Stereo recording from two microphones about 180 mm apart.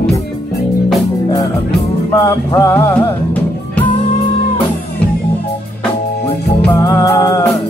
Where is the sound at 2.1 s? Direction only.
20° left (ahead or behind).